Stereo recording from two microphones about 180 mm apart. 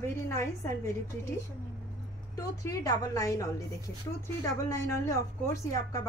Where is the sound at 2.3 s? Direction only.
20° left (ahead or behind).